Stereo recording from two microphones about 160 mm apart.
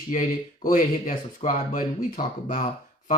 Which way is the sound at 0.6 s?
55° left (ahead or behind).